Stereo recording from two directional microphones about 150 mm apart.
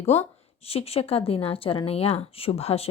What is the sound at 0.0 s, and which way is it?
A woman's voice, 45° left (ahead or behind).